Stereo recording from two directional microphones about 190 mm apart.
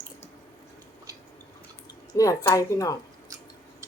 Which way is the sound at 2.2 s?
15° left (ahead or behind).